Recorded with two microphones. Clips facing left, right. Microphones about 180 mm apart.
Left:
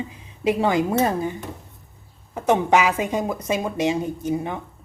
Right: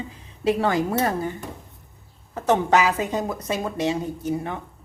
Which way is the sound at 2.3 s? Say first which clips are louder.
Left 1 dB; 15° left (ahead or behind).